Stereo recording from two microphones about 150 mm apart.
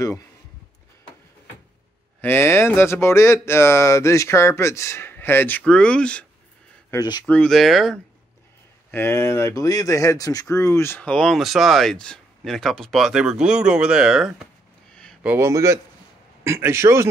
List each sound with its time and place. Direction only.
2.2 s speech: 15° left (ahead or behind)
6.9 s speech: 25° left (ahead or behind)
7.2 s speech: 5° left (ahead or behind)
8.9 s speech: 20° left (ahead or behind)
15.2 s a man's voice: 20° right (ahead or behind)